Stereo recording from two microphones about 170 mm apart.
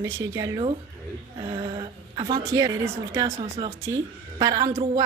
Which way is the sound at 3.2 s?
30° right (ahead or behind).